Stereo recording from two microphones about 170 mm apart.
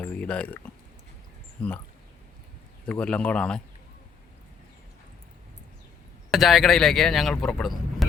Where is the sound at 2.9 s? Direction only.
5° left (ahead or behind).